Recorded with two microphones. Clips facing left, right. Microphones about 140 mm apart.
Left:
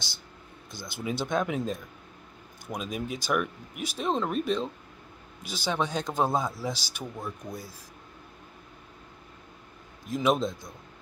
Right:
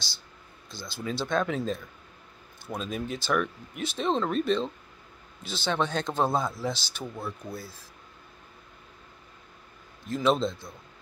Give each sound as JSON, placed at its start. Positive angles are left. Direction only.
{"t": 0.7, "sound": "speech", "side_deg": 20}
{"t": 10.0, "sound": "speech", "side_deg": 15}